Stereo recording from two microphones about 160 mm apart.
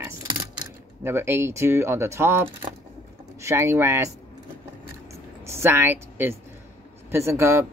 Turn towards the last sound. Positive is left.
turn(degrees=-15)  # may be behind; listen again after turning